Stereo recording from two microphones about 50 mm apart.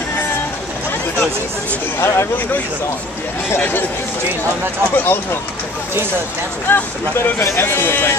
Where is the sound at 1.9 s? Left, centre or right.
Left.